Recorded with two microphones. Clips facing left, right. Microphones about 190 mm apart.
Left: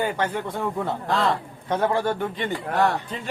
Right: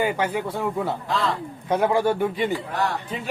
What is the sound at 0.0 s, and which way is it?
A man's voice, 10° right (ahead or behind).